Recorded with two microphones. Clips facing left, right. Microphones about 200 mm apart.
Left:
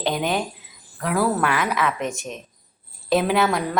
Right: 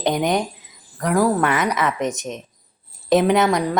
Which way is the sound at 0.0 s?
15° right (ahead or behind).